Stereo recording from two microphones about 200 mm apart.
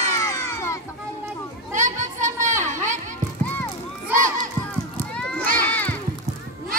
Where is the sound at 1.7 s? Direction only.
40° right (ahead or behind).